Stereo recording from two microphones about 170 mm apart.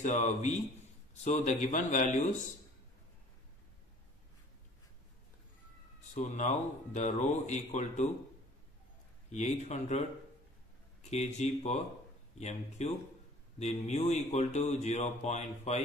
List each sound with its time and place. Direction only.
0.0 s speech: 45° left (ahead or behind)
5.9 s speech: 40° left (ahead or behind)
9.3 s speech: 45° left (ahead or behind)
11.1 s speech: 40° left (ahead or behind)